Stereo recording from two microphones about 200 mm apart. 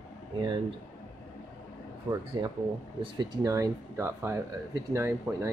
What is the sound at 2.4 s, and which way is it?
Speech, 20° right (ahead or behind).